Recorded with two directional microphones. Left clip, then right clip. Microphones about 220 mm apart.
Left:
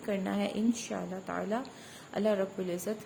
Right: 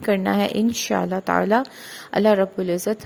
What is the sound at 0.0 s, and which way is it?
A woman's voice, 40° right (ahead or behind).